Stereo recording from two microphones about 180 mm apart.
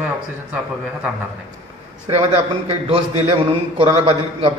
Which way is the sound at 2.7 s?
35° right (ahead or behind).